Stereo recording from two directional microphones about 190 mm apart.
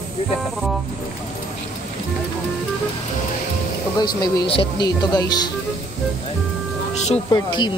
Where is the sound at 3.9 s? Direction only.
20° left (ahead or behind).